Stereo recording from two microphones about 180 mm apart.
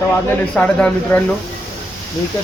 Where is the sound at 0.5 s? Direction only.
5° left (ahead or behind).